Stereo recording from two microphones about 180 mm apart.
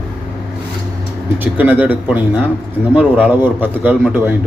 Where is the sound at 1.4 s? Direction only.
10° right (ahead or behind).